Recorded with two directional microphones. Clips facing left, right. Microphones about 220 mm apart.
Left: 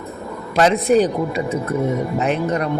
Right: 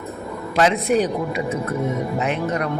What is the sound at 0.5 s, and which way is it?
Speech, 35° left (ahead or behind).